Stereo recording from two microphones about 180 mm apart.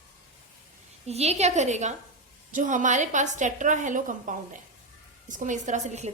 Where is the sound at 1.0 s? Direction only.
35° right (ahead or behind).